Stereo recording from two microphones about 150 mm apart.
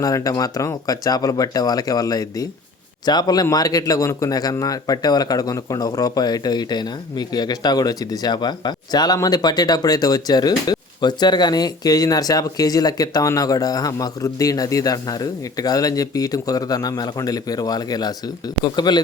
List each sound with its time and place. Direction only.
0.0 s a man's voice: 25° left (ahead or behind)